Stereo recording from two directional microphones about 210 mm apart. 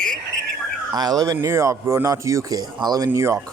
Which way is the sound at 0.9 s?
20° right (ahead or behind).